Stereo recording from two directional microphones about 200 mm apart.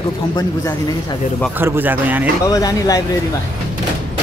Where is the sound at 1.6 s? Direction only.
10° right (ahead or behind).